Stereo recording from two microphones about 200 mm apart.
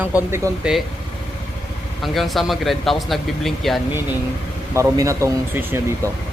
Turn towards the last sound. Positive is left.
turn(degrees=-10)  # may be behind; listen again after turning